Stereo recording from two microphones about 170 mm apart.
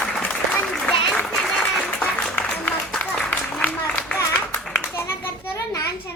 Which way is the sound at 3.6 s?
10° left (ahead or behind).